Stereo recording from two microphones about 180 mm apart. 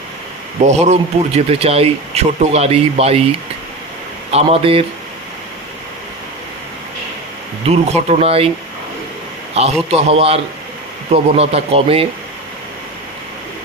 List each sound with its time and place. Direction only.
0.6 s speech: 40° right (ahead or behind)
4.3 s speech: 35° right (ahead or behind)
7.6 s speech: 35° right (ahead or behind)
9.6 s speech: 35° right (ahead or behind)